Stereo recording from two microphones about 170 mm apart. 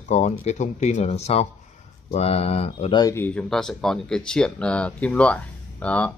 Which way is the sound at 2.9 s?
15° left (ahead or behind).